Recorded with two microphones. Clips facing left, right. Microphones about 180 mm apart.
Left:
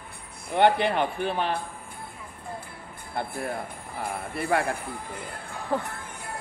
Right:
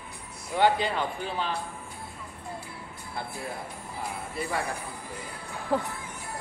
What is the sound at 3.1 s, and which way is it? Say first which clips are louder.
Speech: left 5 dB; 55° left (ahead or behind).